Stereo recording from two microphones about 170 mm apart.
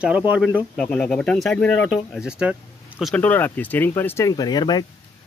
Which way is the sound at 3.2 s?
10° left (ahead or behind).